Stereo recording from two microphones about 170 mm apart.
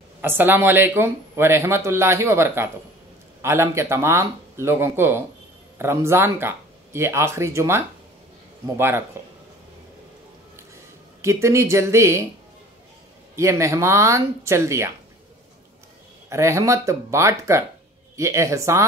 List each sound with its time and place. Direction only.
0.2 s speech: 10° right (ahead or behind)
11.1 s speech: 15° right (ahead or behind)
13.4 s speech: 15° right (ahead or behind)
16.3 s speech: 15° right (ahead or behind)